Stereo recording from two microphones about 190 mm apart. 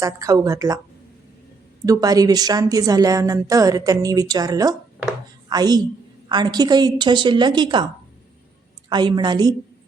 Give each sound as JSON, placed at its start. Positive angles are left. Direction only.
{"t": 0.0, "sound": "speech", "side_deg": -15}
{"t": 1.8, "sound": "a woman's voice", "side_deg": -20}
{"t": 8.9, "sound": "a woman's voice", "side_deg": -25}